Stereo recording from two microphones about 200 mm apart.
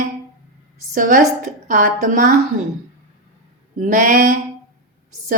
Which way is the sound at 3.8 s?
40° right (ahead or behind).